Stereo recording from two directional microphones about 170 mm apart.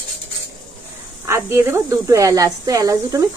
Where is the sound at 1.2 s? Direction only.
15° right (ahead or behind).